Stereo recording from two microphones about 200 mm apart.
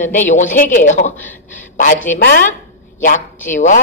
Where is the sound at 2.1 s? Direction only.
45° left (ahead or behind).